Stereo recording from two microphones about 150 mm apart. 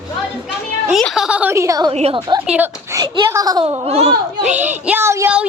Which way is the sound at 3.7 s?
45° right (ahead or behind).